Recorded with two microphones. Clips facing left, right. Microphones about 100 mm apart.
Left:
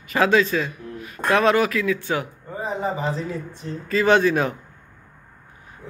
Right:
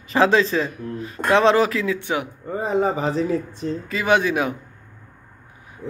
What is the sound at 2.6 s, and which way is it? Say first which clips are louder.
Speech: right 4 dB; 80° right.